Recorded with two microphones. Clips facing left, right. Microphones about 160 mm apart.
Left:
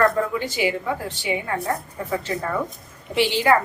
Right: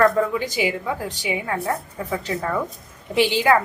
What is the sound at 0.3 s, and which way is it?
Speech, 15° right (ahead or behind).